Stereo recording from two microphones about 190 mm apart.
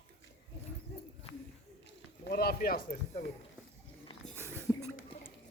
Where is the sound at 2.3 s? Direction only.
55° left (ahead or behind).